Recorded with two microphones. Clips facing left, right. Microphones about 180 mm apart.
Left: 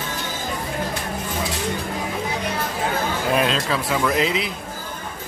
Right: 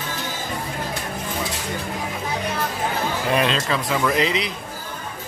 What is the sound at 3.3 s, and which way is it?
Speech, centre (ahead or behind).